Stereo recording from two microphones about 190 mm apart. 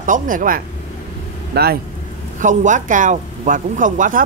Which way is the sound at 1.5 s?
55° right (ahead or behind).